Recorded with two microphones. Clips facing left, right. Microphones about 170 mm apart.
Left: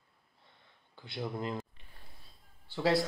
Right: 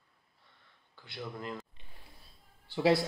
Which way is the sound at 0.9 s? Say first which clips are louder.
Left 4 dB; 20° left (ahead or behind).